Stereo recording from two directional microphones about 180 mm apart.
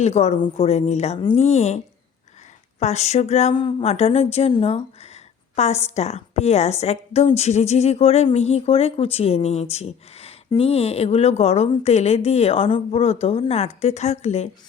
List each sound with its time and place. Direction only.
0.0 s a woman's voice: 35° left (ahead or behind)